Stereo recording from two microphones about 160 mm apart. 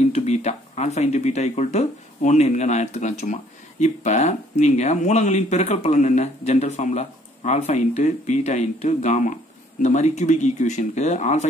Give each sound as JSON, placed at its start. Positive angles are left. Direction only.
{"t": 0.1, "sound": "speech", "side_deg": 45}